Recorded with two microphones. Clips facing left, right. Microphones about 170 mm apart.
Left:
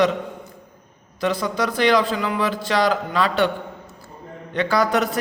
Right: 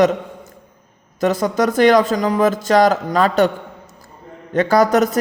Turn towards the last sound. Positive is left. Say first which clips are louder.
# right 6 dB
turn(degrees=-45)  # may be behind; listen again after turning